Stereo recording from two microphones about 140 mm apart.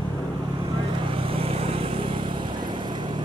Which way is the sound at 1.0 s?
40° right (ahead or behind).